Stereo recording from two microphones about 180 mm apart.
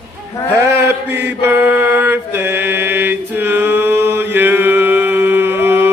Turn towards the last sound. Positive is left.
turn(degrees=-15)  # may be behind; listen again after turning